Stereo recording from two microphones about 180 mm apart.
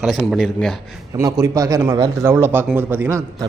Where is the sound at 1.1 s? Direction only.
20° right (ahead or behind).